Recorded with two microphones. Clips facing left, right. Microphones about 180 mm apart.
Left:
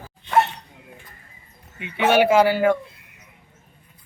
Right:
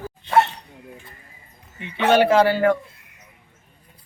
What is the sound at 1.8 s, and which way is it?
Speech, 10° left (ahead or behind).